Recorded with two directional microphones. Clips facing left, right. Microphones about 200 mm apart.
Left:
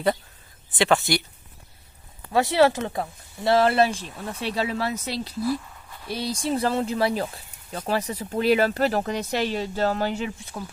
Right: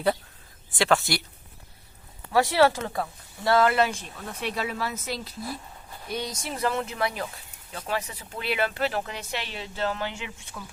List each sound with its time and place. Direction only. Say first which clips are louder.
0.8 s speech: left 2 dB; centre (ahead or behind)
2.3 s speech: left 2 dB; 20° left (ahead or behind); by 10.6 s 35° left (ahead or behind)